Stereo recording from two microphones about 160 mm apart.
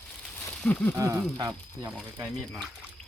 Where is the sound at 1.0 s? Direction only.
20° right (ahead or behind).